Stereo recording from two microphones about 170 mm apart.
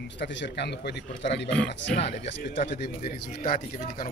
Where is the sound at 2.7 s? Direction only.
75° left (ahead or behind).